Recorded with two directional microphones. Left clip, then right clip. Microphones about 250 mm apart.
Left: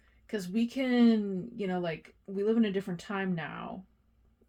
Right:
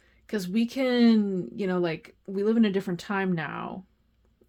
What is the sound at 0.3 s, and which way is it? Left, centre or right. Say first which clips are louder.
Speech: right 4 dB; right.